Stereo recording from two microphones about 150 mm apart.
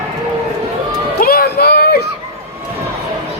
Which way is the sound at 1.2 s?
85° left.